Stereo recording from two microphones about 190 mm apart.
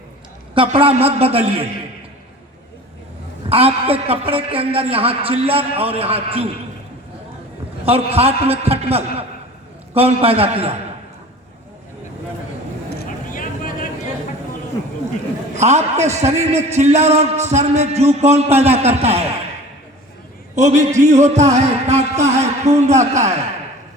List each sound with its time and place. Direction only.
0.5 s a man's voice: 30° right (ahead or behind)
3.5 s a man's voice: 30° right (ahead or behind)
7.9 s a man's voice: 30° right (ahead or behind)
12.9 s vehicle: 55° left (ahead or behind)
15.5 s a man's voice: 35° right (ahead or behind)
20.6 s a man's voice: 40° right (ahead or behind)